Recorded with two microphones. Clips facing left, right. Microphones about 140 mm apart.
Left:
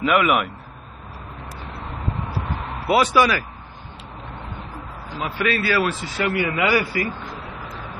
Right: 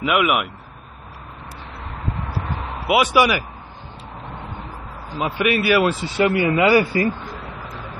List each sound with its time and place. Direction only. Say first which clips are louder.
0.0 s speech: left 1 dB; 5° right (ahead or behind)
2.6 s vehicle: even; 5° right (ahead or behind)
3.1 s speech: right 1 dB; 15° right (ahead or behind)
5.2 s speech: right 3 dB; 15° right (ahead or behind)